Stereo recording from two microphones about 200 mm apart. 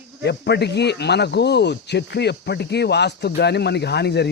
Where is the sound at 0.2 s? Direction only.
55° left (ahead or behind).